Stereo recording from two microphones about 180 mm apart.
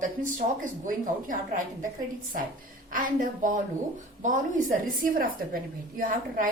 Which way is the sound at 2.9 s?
45° right (ahead or behind).